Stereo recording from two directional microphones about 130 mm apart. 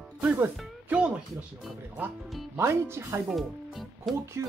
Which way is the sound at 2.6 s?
20° right (ahead or behind).